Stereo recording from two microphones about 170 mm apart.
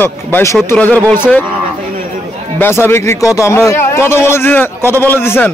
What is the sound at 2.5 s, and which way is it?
A man's voice, 15° left (ahead or behind).